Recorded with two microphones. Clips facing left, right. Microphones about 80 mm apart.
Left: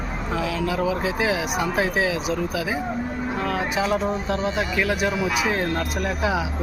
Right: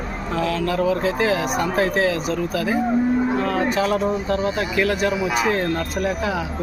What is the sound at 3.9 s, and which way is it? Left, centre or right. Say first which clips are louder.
Speech: right 3 dB; centre.